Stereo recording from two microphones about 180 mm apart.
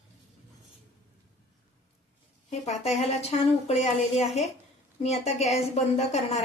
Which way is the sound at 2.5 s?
35° left (ahead or behind).